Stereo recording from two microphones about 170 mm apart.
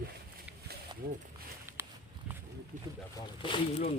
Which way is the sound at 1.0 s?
60° right (ahead or behind).